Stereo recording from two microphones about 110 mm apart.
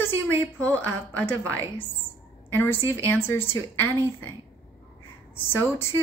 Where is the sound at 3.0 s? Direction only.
20° left (ahead or behind).